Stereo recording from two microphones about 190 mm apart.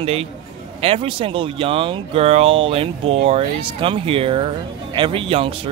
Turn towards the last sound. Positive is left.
turn(degrees=-30)  # may be behind; listen again after turning